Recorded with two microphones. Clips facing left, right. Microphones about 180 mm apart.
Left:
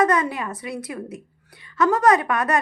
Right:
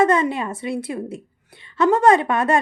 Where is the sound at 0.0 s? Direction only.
25° right (ahead or behind).